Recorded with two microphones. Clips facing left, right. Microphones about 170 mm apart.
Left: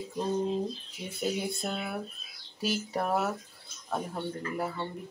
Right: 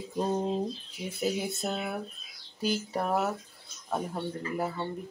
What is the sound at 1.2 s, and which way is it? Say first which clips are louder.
Speech: right 1 dB; 5° right (ahead or behind).